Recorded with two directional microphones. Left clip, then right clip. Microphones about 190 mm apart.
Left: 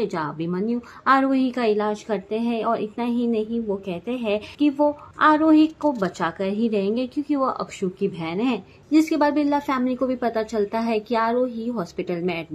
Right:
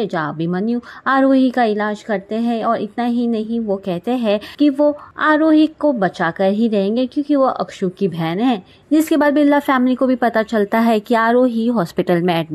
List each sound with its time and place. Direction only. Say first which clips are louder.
0.0 s a woman's voice: right 5 dB; 30° right (ahead or behind)